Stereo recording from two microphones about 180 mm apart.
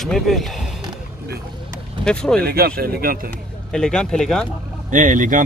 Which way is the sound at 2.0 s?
5° left (ahead or behind).